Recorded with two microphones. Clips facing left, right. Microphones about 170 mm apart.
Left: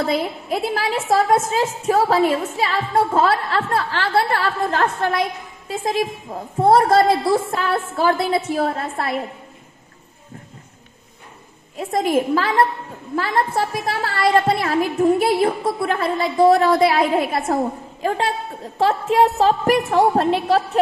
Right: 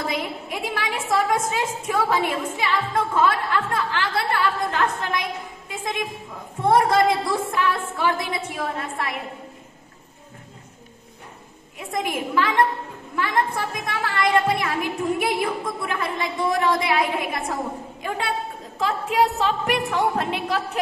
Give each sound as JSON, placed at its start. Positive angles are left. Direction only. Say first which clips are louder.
{"t": 0.0, "sound": "a woman's voice", "louder": "left 6 dB", "side_deg": 35}
{"t": 11.7, "sound": "a woman's voice", "louder": "left 8 dB", "side_deg": 30}